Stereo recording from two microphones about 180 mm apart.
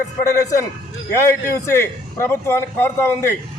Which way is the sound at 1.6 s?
15° left (ahead or behind).